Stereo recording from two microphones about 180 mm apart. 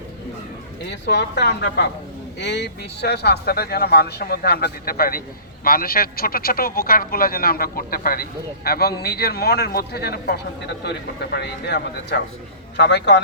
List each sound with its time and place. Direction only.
0.9 s a man's voice: 75° left (ahead or behind)